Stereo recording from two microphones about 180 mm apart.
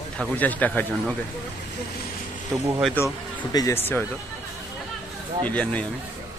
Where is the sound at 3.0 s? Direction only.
10° left (ahead or behind).